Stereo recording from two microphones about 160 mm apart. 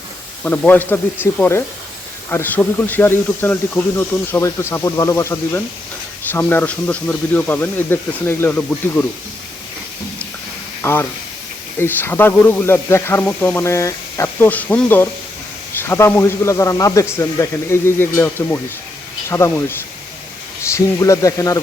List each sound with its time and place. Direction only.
0.4 s speech: 10° left (ahead or behind)
10.8 s speech: 15° left (ahead or behind)
20.7 s a man's voice: 20° left (ahead or behind)